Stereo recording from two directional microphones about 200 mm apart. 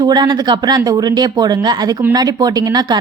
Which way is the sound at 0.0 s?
20° right (ahead or behind).